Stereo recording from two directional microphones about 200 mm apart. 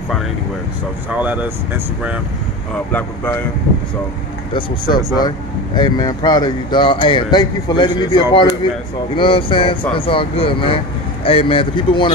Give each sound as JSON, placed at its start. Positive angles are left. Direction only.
{"t": 1.1, "sound": "speech", "side_deg": -5}
{"t": 2.9, "sound": "speech", "side_deg": 10}
{"t": 4.6, "sound": "speech", "side_deg": 20}